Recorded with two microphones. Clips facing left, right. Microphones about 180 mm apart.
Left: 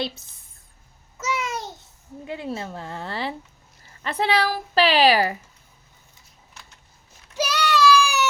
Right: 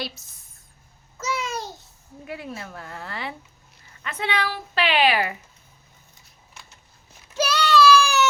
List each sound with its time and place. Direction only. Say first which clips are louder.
1.2 s babbling: left 1 dB; 20° left (ahead or behind)
2.2 s a woman's voice: left 4 dB; 25° left (ahead or behind)
7.3 s child singing: right 2 dB; 15° left (ahead or behind)